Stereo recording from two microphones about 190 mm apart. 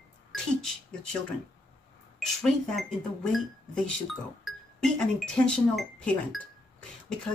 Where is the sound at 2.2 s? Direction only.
Centre (ahead or behind).